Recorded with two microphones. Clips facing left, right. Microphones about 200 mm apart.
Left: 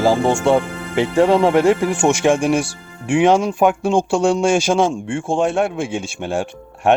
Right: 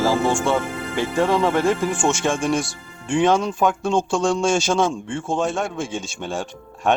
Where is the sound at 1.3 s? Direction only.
25° left (ahead or behind).